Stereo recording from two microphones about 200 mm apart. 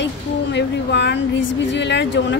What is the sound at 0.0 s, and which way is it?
A woman's voice, 60° left (ahead or behind).